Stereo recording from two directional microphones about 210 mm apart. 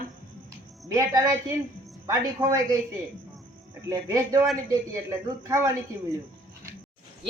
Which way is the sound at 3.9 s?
15° right (ahead or behind).